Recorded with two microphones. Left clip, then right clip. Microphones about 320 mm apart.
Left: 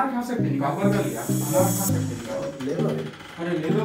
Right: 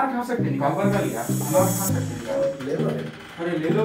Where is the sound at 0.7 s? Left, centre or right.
Centre.